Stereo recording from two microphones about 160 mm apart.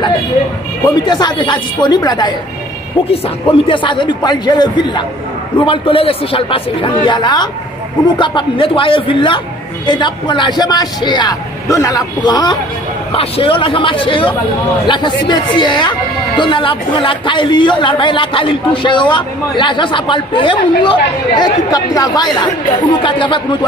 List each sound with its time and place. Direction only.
0.8 s speech: 25° left (ahead or behind)
3.6 s speech: 30° left (ahead or behind)